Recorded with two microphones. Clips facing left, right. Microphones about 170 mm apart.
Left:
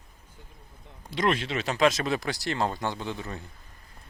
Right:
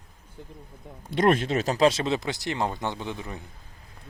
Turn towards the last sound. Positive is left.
turn(degrees=-15)  # may be behind; listen again after turning